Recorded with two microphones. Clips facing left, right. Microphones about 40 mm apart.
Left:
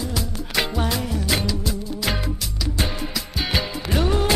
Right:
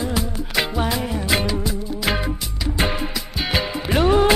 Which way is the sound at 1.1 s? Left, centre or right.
Right.